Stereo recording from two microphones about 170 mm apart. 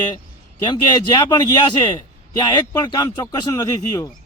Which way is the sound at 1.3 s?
25° left (ahead or behind).